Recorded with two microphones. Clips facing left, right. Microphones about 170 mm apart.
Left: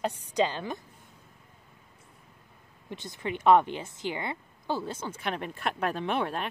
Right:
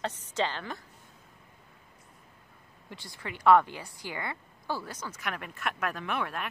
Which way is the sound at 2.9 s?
20° left (ahead or behind).